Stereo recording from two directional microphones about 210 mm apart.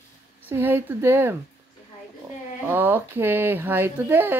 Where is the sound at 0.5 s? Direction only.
10° right (ahead or behind).